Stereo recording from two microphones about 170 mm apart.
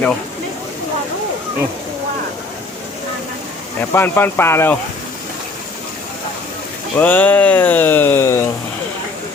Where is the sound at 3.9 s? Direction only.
15° left (ahead or behind).